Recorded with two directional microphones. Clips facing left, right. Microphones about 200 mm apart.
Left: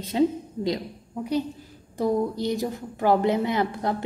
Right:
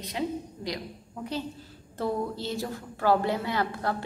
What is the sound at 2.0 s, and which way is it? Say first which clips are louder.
A woman's voice: left 6 dB; 15° left (ahead or behind).